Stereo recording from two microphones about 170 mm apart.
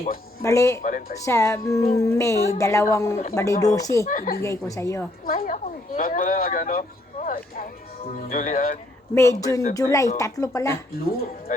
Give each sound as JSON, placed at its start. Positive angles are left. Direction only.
{"t": 0.4, "sound": "speech", "side_deg": 15}
{"t": 0.8, "sound": "speech", "side_deg": 55}
{"t": 1.2, "sound": "speech", "side_deg": 15}
{"t": 4.0, "sound": "speech", "side_deg": 55}
{"t": 4.4, "sound": "speech", "side_deg": 15}
{"t": 5.2, "sound": "speech", "side_deg": 55}
{"t": 9.1, "sound": "speech", "side_deg": 20}